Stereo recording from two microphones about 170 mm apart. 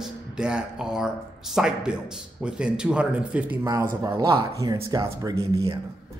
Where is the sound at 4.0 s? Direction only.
20° right (ahead or behind).